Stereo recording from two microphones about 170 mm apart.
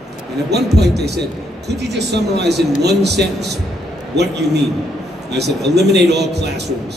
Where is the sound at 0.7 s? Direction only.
75° right (ahead or behind).